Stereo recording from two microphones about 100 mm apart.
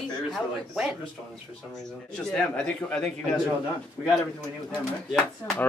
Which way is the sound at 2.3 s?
10° left (ahead or behind).